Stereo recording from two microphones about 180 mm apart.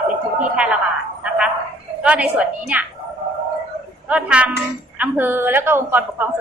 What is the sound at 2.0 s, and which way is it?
Speech, 5° right (ahead or behind).